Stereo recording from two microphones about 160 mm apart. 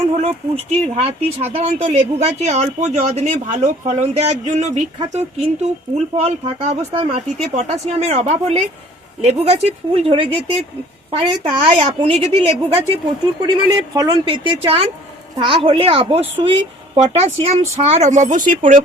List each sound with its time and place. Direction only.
0.2 s speech: 40° right (ahead or behind)
11.5 s speech: 35° right (ahead or behind)
13.4 s speech: 25° right (ahead or behind); by 18.8 s 55° right (ahead or behind)